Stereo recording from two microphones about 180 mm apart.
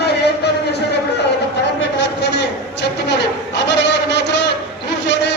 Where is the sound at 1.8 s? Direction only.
70° left (ahead or behind).